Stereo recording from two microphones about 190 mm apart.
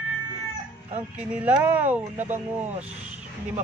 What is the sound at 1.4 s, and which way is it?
Speech, 10° right (ahead or behind).